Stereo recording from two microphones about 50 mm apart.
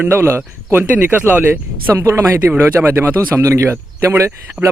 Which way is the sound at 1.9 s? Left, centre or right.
Right.